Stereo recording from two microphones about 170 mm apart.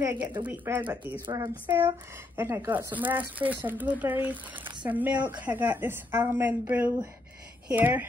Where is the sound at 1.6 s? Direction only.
10° right (ahead or behind).